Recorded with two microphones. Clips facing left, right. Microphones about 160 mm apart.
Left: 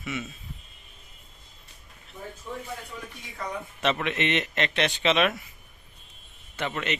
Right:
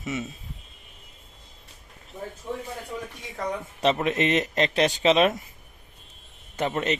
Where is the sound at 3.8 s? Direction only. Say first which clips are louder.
Right 4 dB; 35° right (ahead or behind).